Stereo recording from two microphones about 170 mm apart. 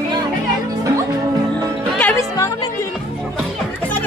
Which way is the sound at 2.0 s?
15° left (ahead or behind).